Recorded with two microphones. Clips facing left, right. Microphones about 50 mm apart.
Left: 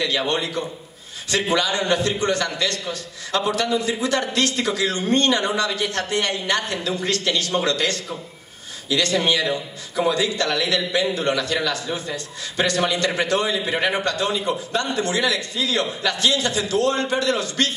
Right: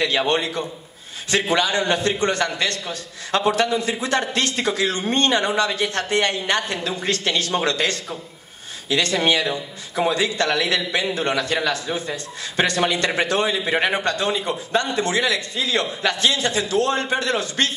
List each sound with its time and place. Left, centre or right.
0.0 s a man's voice: right